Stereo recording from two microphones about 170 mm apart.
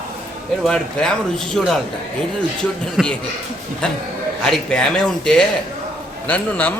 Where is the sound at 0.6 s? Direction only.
5° left (ahead or behind).